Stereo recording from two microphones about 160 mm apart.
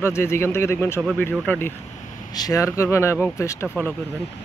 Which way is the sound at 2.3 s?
20° left (ahead or behind).